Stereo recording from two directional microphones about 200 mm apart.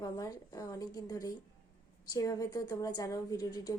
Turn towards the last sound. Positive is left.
turn(degrees=20)  # may be behind; listen again after turning